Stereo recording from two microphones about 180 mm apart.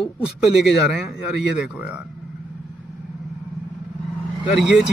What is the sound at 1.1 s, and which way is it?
Speech, 5° right (ahead or behind).